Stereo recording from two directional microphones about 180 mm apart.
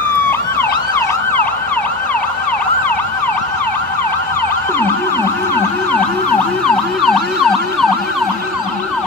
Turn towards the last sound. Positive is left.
turn(degrees=5)  # may be behind; listen again after turning